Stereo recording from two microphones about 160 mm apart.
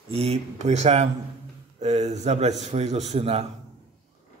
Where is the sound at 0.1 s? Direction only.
40° right (ahead or behind).